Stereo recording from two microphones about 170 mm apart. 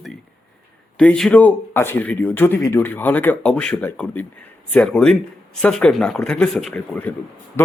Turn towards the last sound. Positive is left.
turn(degrees=15)  # may be behind; listen again after turning